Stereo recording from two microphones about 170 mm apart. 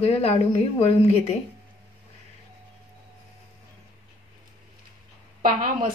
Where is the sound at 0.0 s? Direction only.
35° left (ahead or behind).